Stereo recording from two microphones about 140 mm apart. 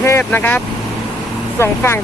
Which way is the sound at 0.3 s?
15° left (ahead or behind).